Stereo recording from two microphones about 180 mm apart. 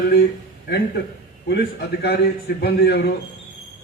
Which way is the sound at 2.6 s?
65° left (ahead or behind).